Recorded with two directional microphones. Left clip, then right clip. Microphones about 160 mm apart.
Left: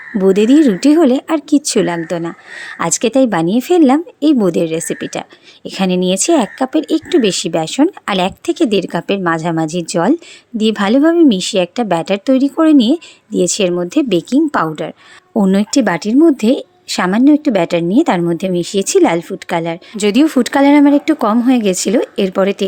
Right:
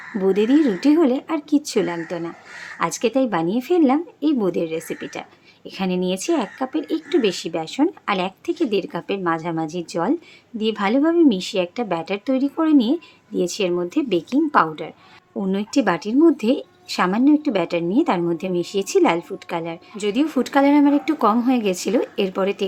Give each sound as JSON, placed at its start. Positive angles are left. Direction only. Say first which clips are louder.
{"t": 0.2, "sound": "speech", "louder": "left 7 dB", "side_deg": 45}